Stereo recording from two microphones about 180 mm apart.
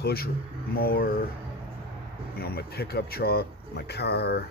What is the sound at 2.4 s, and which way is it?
Speech, 60° left (ahead or behind).